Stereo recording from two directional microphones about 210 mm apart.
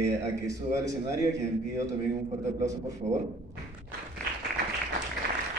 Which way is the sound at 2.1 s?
35° right (ahead or behind).